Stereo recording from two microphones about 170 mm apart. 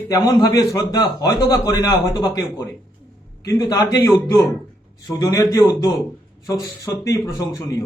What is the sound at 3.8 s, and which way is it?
A man's voice, 20° left (ahead or behind).